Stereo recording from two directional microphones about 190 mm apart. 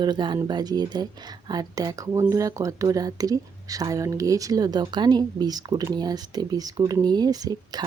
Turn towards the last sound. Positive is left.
turn(degrees=-20)  # may be behind; listen again after turning